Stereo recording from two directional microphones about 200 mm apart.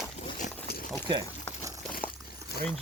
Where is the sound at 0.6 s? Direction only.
50° left (ahead or behind).